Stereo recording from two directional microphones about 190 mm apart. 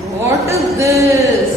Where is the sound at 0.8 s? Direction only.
15° right (ahead or behind).